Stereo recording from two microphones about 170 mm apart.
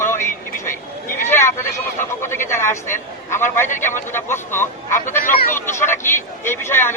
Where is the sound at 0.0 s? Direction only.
15° left (ahead or behind).